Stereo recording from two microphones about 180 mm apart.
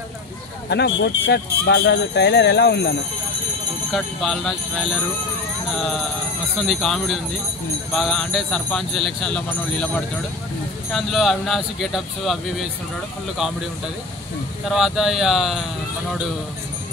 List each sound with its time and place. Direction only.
0.7 s speech: 70° left (ahead or behind)
3.9 s speech: centre (ahead or behind)
14.7 s speech: centre (ahead or behind)